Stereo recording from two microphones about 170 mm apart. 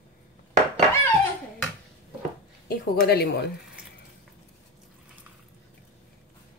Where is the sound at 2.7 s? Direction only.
65° left (ahead or behind).